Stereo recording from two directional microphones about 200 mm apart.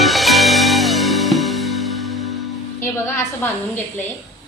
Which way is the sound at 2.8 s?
15° left (ahead or behind).